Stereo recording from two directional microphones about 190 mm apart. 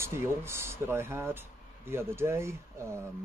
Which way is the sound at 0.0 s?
15° right (ahead or behind).